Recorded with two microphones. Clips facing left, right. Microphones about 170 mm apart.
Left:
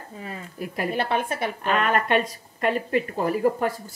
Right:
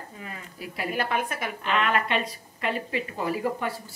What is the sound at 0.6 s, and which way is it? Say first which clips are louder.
Speech: left 6 dB; 50° left (ahead or behind).